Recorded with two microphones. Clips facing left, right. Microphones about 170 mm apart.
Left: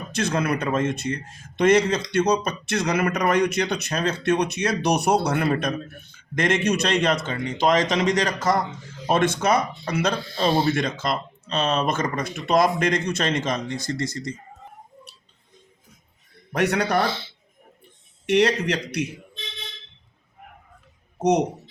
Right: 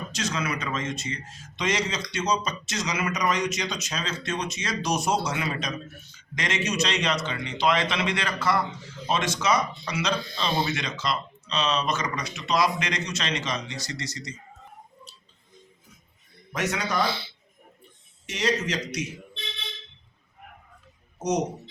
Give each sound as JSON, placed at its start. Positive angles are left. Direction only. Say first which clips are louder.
{"t": 0.1, "sound": "speech", "louder": "left 8 dB", "side_deg": 55}
{"t": 10.3, "sound": "speech", "louder": "left 9 dB", "side_deg": 35}
{"t": 10.7, "sound": "speech", "louder": "left 6 dB", "side_deg": 50}
{"t": 16.5, "sound": "speech", "louder": "left 7 dB", "side_deg": 60}
{"t": 17.1, "sound": "speech", "louder": "left 2 dB", "side_deg": -10}
{"t": 18.3, "sound": "speech", "louder": "left 7 dB", "side_deg": 60}
{"t": 21.2, "sound": "speech", "louder": "left 6 dB", "side_deg": 60}